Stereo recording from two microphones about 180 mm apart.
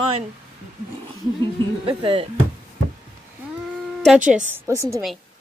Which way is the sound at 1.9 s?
30° right (ahead or behind).